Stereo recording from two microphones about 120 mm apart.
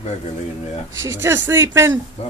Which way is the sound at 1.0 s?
20° right (ahead or behind).